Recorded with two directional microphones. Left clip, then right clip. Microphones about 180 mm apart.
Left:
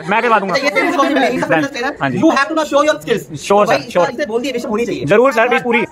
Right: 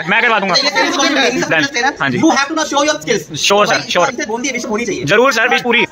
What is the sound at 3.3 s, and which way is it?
Speech, 5° left (ahead or behind).